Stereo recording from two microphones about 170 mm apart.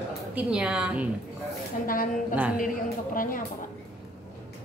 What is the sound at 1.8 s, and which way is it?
Speech, 55° left (ahead or behind).